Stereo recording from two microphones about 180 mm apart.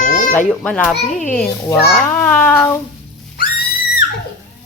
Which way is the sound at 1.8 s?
10° left (ahead or behind).